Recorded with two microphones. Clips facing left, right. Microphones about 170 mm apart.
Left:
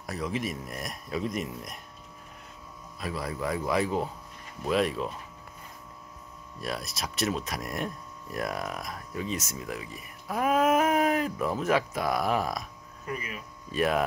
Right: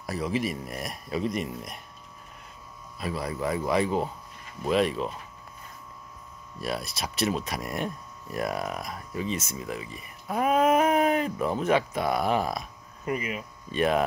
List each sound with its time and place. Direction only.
0.0 s speech: centre (ahead or behind)
3.0 s speech: centre (ahead or behind)
6.6 s speech: centre (ahead or behind)
13.0 s speech: 20° right (ahead or behind)
13.7 s speech: centre (ahead or behind)